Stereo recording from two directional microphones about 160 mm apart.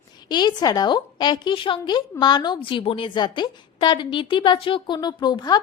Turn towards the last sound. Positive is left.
turn(degrees=25)  # may be behind; listen again after turning